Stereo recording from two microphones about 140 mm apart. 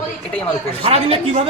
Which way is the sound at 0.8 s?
45° right (ahead or behind).